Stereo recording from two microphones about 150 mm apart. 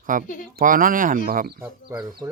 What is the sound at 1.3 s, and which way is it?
Speech, 85° right.